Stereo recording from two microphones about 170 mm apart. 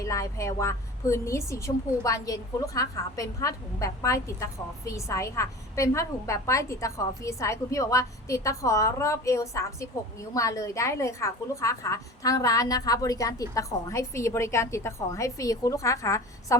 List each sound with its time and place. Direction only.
0.0 s a woman's voice: 15° left (ahead or behind)